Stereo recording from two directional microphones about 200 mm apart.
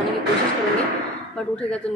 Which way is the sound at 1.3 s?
5° left (ahead or behind).